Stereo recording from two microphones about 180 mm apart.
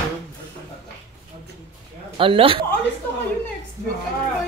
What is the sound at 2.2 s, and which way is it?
Speech, 30° right (ahead or behind).